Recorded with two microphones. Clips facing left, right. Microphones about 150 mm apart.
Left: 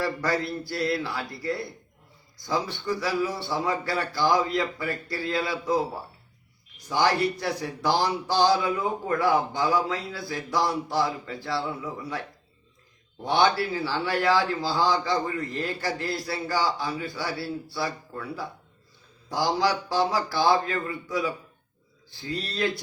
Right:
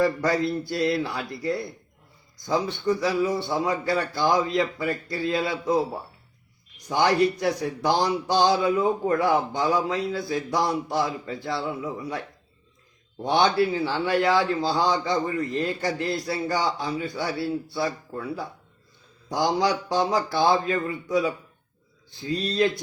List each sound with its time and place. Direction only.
0.0 s speech: 20° right (ahead or behind)
13.2 s speech: 20° right (ahead or behind)
22.3 s speech: 20° right (ahead or behind)